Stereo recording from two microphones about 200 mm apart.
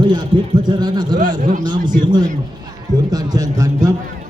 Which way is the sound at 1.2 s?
40° right (ahead or behind).